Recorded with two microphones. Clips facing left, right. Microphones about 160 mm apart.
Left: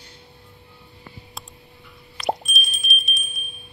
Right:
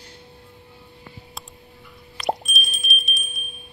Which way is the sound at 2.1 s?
Centre (ahead or behind).